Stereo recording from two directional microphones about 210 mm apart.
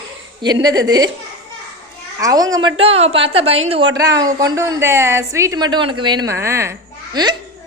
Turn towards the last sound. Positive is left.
turn(degrees=-20)  # may be behind; listen again after turning